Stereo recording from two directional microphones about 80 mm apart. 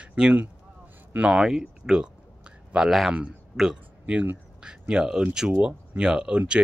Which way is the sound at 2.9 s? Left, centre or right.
Centre.